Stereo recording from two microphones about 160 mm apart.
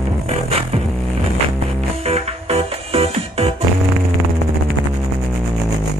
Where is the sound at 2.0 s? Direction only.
40° right (ahead or behind).